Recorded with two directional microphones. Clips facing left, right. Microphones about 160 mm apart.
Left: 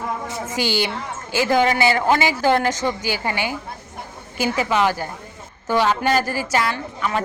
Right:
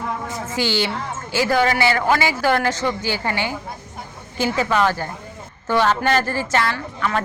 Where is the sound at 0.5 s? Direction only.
15° left (ahead or behind).